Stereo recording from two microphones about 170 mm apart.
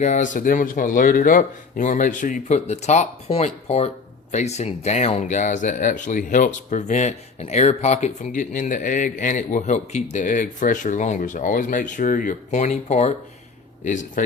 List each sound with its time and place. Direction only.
0.0 s speech: 45° left (ahead or behind)